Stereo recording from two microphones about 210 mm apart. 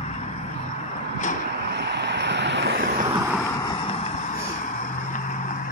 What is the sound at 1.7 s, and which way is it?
Vehicle, 55° right (ahead or behind).